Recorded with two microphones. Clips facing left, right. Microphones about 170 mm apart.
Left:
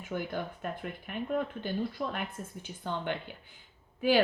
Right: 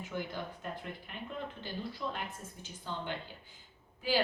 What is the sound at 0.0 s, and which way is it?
A woman's voice, 55° left (ahead or behind).